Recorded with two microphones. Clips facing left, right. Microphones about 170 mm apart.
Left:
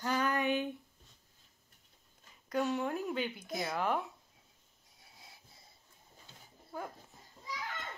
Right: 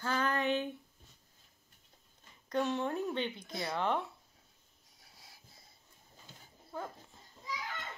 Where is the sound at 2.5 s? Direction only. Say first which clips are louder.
Even; 10° left (ahead or behind).